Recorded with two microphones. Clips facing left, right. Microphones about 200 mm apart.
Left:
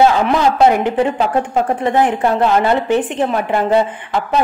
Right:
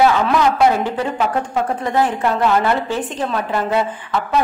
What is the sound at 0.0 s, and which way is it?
A woman's voice, 30° left (ahead or behind).